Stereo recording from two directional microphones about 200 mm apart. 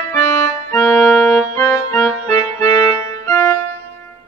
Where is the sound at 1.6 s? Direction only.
15° left (ahead or behind).